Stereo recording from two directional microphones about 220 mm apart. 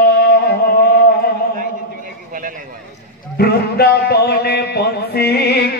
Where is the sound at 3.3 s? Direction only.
45° left (ahead or behind).